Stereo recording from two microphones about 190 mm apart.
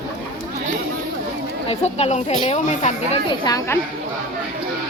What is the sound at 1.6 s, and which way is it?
Speech, 35° left (ahead or behind).